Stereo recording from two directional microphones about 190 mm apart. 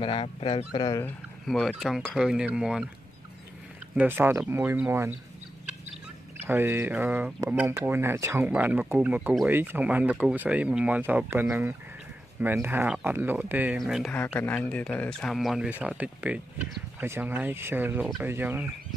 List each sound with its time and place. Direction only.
0.0 s speech: 30° left (ahead or behind)
1.0 s speech: centre (ahead or behind)
3.9 s speech: 10° right (ahead or behind)
6.4 s speech: 10° right (ahead or behind)